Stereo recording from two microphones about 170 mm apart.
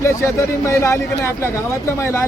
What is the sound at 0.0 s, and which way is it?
Speech, 15° left (ahead or behind).